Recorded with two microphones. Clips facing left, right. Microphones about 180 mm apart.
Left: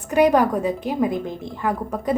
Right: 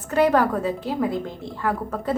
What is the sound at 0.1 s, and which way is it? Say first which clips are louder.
A woman's voice: left 2 dB; 15° left (ahead or behind).